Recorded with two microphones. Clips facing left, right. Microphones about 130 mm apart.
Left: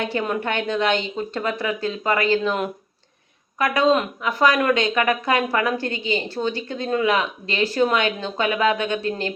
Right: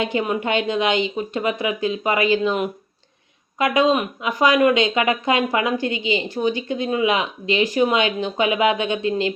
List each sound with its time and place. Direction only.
0.0 s speech: 15° right (ahead or behind)